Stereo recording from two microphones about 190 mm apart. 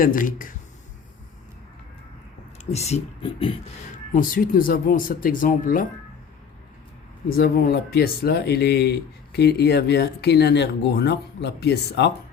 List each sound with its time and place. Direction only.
0.0 s speech: 45° left (ahead or behind)
2.6 s speech: 35° left (ahead or behind)
4.1 s speech: 45° left (ahead or behind)
7.3 s speech: 55° left (ahead or behind)